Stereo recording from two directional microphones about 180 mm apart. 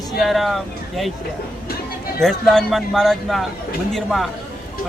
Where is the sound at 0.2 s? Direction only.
Centre (ahead or behind).